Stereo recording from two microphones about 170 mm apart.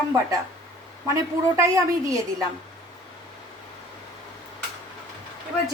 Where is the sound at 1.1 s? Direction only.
20° right (ahead or behind).